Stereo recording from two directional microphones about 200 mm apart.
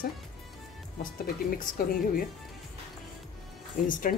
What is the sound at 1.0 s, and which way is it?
Speech, 45° left (ahead or behind).